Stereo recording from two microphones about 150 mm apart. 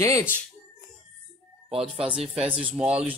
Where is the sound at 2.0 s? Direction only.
5° right (ahead or behind).